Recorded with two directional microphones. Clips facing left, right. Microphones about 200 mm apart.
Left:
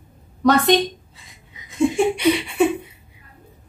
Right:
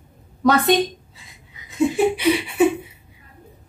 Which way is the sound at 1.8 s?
5° right (ahead or behind).